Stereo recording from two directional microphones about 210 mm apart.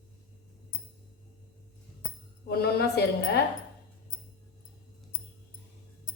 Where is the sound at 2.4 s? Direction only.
50° left (ahead or behind).